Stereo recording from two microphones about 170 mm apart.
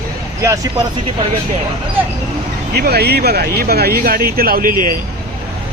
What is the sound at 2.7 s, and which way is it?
Speech, 70° right (ahead or behind).